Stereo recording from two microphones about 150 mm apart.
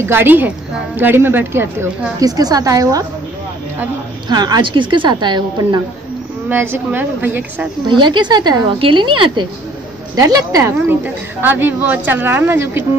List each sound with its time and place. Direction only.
0.0 s a woman's voice: 15° right (ahead or behind)
4.3 s a woman's voice: 25° right (ahead or behind)
6.5 s speech: 15° right (ahead or behind)
7.9 s a woman's voice: 30° right (ahead or behind); by 12.8 s 15° right (ahead or behind)